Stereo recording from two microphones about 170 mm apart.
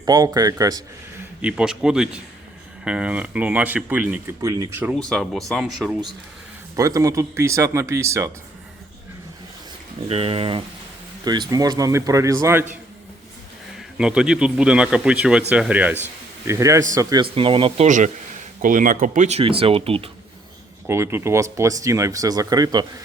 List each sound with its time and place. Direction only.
0.0 s a man's voice: 20° right (ahead or behind)
1.4 s a man's voice: 5° right (ahead or behind)
4.9 s speech: 5° left (ahead or behind)
6.7 s speech: 20° right (ahead or behind)
10.1 s speech: 35° right (ahead or behind)
11.3 s a man's voice: 25° right (ahead or behind)
13.7 s a man's voice: 5° right (ahead or behind); by 17.2 s 20° right (ahead or behind)
17.3 s speech: 30° right (ahead or behind)
17.8 s speech: 45° right (ahead or behind)
19.4 s speech: 35° right (ahead or behind)
20.8 s speech: 15° right (ahead or behind)